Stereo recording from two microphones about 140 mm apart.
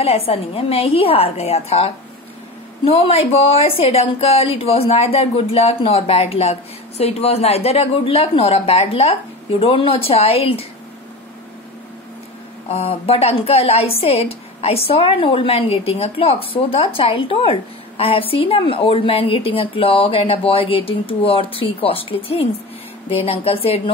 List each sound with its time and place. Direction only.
0.0 s speech: 45° left (ahead or behind)
12.6 s a woman's voice: 45° left (ahead or behind)